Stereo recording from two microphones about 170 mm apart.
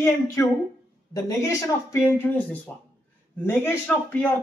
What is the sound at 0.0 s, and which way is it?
Speech, 15° left (ahead or behind).